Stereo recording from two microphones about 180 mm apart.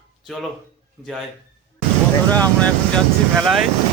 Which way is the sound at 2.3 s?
10° left (ahead or behind).